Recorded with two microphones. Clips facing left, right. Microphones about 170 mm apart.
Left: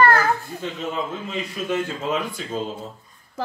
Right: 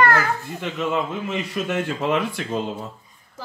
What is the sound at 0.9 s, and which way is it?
Speech, 80° right.